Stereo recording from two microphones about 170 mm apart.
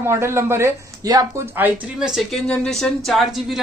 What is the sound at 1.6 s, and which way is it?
Speech, 5° right (ahead or behind).